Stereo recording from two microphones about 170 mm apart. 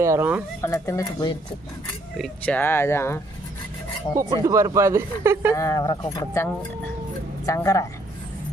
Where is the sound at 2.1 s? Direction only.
5° left (ahead or behind).